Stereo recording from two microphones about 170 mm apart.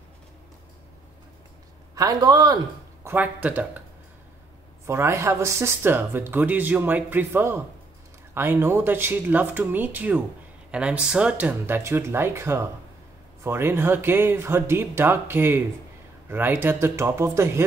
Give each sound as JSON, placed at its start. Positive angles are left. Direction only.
{"t": 2.0, "sound": "speech", "side_deg": -20}
{"t": 4.8, "sound": "speech", "side_deg": -15}